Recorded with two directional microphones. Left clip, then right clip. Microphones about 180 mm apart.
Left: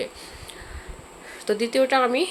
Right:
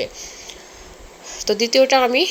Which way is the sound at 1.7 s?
15° right (ahead or behind).